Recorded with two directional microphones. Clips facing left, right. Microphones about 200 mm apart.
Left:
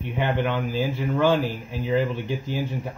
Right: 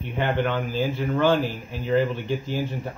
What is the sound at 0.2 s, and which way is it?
Speech, 10° left (ahead or behind).